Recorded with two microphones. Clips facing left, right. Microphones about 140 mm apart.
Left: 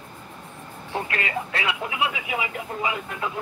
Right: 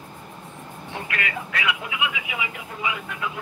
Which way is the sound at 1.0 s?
30° left (ahead or behind).